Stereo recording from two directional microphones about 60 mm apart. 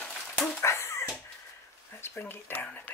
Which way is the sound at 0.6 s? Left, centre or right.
Left.